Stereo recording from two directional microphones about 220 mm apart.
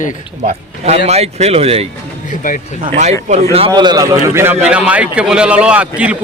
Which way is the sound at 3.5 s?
20° right (ahead or behind).